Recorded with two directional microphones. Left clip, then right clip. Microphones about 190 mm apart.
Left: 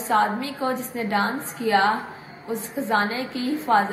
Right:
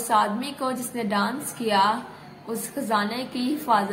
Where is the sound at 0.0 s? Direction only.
25° right (ahead or behind).